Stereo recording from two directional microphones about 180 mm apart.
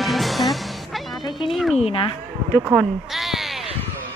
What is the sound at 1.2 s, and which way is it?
Speech, 25° left (ahead or behind).